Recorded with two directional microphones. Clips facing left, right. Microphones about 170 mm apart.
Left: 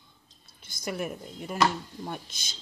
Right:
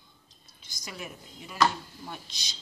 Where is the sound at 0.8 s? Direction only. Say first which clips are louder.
Left 9 dB; 50° left (ahead or behind).